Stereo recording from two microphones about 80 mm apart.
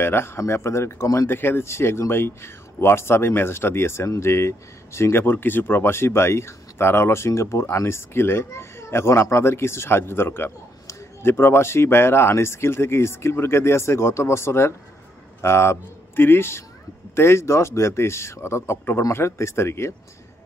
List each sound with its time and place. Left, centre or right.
0.0 s speech: left